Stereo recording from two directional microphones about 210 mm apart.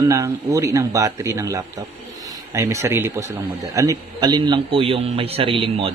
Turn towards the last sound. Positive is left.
turn(degrees=-25)  # may be behind; listen again after turning